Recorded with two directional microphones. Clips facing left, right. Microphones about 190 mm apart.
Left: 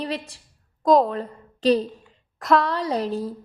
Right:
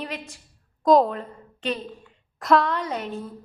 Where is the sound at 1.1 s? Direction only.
35° left (ahead or behind).